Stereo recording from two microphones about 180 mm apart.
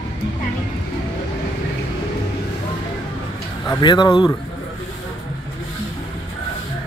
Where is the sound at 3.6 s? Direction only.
25° left (ahead or behind).